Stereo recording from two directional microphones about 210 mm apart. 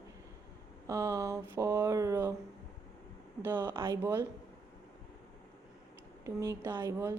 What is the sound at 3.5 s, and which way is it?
Speech, 20° right (ahead or behind).